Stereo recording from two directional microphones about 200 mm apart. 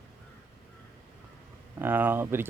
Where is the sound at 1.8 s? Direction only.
10° right (ahead or behind).